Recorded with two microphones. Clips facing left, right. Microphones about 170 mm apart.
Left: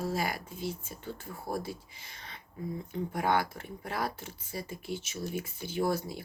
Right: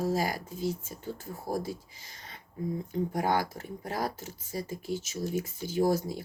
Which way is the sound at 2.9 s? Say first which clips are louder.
Right 1 dB; 40° right (ahead or behind).